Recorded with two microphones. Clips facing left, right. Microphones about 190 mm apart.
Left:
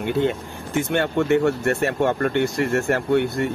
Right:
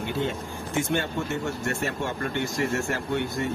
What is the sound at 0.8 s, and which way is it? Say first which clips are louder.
Speech: left 7 dB; 60° left (ahead or behind).